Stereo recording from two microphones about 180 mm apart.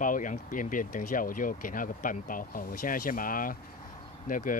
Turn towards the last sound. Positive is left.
turn(degrees=50)  # may be behind; listen again after turning